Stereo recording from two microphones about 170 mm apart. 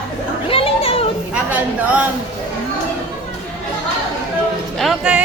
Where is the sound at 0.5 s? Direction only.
35° left (ahead or behind).